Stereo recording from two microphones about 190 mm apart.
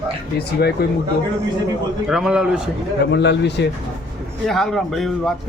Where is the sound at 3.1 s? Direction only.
65° left (ahead or behind).